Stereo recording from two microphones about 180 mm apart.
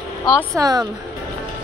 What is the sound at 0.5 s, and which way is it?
Speech, 20° right (ahead or behind).